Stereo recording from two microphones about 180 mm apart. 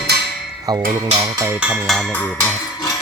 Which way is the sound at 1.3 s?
15° right (ahead or behind).